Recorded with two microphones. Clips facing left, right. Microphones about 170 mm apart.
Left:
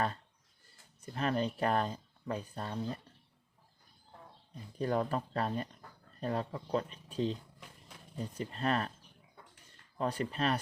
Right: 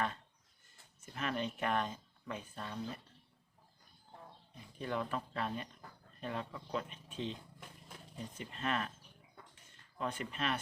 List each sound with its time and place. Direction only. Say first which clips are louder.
1.0 s speech: left 5 dB; 35° left (ahead or behind)
4.5 s speech: left 7 dB; 40° left (ahead or behind)
8.4 s speech: left 5 dB; 35° left (ahead or behind)
10.0 s speech: left 6 dB; 35° left (ahead or behind)